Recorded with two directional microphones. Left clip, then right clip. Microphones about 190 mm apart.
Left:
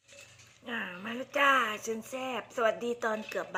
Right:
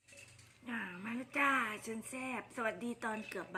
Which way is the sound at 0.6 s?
15° right (ahead or behind).